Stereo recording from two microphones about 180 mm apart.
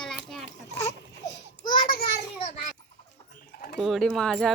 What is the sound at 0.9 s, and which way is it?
Babbling, 20° left (ahead or behind).